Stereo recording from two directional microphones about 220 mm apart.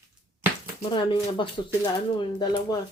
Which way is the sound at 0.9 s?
20° left (ahead or behind).